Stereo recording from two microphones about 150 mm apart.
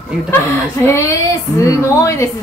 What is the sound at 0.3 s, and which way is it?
Speech, 15° left (ahead or behind).